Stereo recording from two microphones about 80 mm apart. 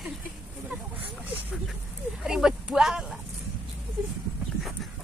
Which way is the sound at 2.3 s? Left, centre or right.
Centre.